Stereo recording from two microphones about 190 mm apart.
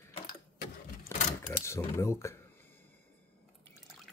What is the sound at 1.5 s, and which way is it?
Speech, 15° left (ahead or behind).